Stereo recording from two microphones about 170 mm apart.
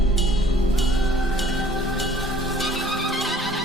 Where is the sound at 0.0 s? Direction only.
Centre (ahead or behind).